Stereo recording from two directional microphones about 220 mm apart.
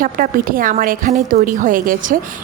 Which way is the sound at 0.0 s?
40° right (ahead or behind).